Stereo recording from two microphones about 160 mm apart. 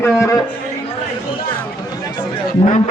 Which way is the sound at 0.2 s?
20° left (ahead or behind).